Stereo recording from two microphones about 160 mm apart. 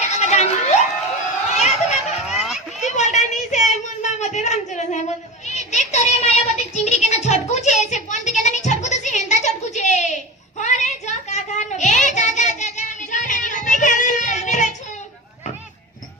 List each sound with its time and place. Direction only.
0.2 s crowd: 45° left (ahead or behind)
1.5 s children playing: 45° left (ahead or behind)
2.3 s children playing: 5° right (ahead or behind)
2.8 s a sound: 50° left (ahead or behind)
5.9 s child singing: 45° left (ahead or behind)